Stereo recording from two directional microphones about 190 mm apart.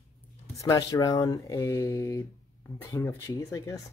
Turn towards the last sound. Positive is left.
turn(degrees=15)  # may be behind; listen again after turning